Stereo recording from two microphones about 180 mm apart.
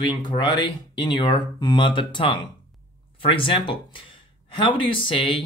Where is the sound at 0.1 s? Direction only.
25° left (ahead or behind).